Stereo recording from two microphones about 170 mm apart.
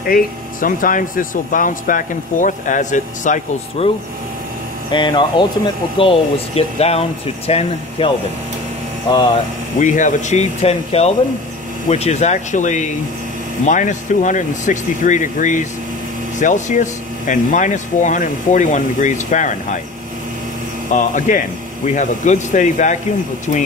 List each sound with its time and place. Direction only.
0.0 s speech: 55° left (ahead or behind)
4.9 s speech: 30° left (ahead or behind)
9.8 s speech: 50° left (ahead or behind)
20.9 s speech: 45° left (ahead or behind)